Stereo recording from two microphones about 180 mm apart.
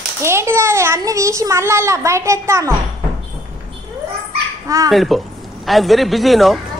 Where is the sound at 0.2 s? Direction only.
15° right (ahead or behind).